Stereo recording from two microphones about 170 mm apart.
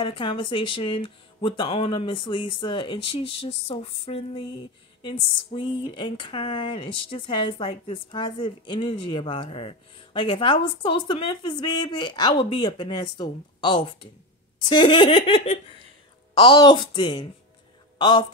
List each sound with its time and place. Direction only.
0.0 s speech: 30° left (ahead or behind)